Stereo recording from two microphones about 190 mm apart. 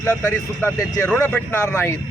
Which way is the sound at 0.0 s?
10° left (ahead or behind).